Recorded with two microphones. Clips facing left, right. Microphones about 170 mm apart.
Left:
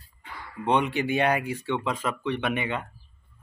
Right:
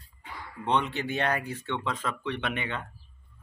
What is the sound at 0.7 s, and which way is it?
Speech, 10° left (ahead or behind).